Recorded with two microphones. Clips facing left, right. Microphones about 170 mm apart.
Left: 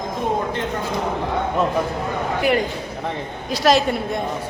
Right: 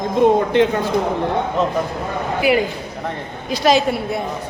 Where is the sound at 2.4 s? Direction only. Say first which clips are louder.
Right 4 dB; 5° right (ahead or behind).